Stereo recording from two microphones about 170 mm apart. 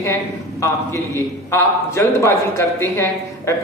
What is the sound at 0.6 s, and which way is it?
A man's voice, 15° left (ahead or behind).